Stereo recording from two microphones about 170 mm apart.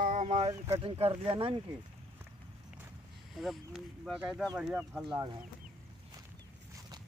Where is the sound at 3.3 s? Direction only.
Centre (ahead or behind).